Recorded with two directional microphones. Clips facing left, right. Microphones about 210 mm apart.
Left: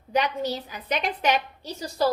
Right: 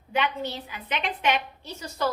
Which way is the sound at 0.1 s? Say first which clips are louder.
Left 3 dB; 40° left (ahead or behind).